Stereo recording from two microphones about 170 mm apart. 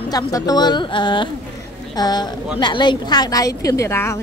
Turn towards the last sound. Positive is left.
turn(degrees=15)  # may be behind; listen again after turning